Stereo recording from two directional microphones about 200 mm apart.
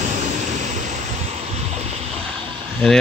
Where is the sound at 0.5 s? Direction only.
35° right (ahead or behind).